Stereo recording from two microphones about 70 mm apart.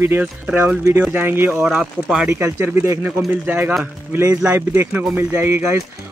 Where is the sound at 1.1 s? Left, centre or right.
Right.